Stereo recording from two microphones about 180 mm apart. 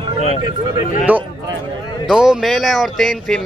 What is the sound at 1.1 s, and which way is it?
Speech, 10° right (ahead or behind).